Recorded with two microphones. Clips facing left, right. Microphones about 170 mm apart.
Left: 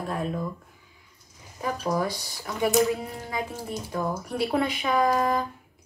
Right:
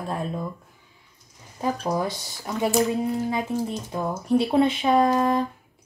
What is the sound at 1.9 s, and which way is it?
Speech, 20° right (ahead or behind).